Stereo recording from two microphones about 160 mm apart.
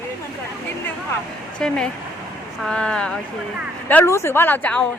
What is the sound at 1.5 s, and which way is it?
Speech, 5° left (ahead or behind).